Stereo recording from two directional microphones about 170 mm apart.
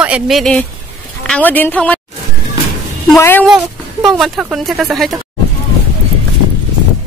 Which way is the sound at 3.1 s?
10° left (ahead or behind).